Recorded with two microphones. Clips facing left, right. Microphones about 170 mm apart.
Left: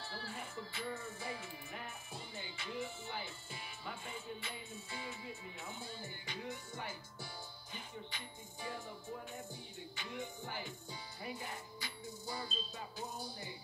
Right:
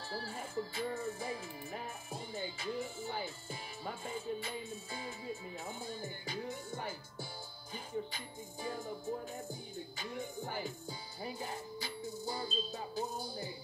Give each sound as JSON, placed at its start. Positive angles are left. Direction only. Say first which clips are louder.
{"t": 0.1, "sound": "music", "louder": "right 9 dB", "side_deg": -35}